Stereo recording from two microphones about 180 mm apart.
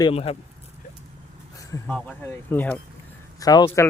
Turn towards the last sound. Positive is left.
turn(degrees=20)  # may be behind; listen again after turning